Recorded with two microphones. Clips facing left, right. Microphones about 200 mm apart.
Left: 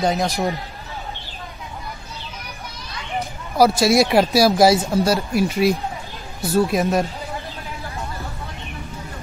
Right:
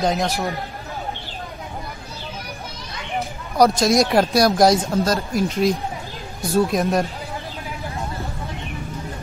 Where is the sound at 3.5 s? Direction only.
5° left (ahead or behind).